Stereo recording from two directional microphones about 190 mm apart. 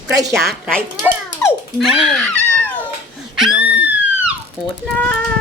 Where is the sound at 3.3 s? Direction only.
Centre (ahead or behind).